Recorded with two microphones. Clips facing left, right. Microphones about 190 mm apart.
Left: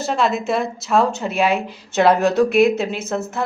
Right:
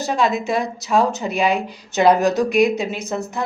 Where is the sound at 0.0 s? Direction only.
Centre (ahead or behind).